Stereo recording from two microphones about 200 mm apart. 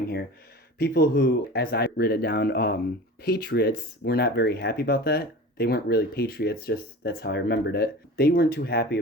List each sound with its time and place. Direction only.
0.8 s speech: 50° left (ahead or behind)